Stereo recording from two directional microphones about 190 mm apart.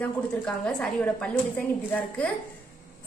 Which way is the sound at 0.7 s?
5° left (ahead or behind).